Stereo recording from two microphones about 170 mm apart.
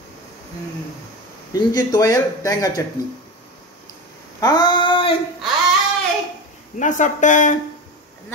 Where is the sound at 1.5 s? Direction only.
25° left (ahead or behind).